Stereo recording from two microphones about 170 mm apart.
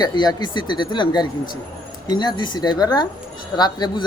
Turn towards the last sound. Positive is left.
turn(degrees=25)  # may be behind; listen again after turning